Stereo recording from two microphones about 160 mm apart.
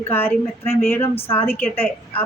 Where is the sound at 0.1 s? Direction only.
10° left (ahead or behind).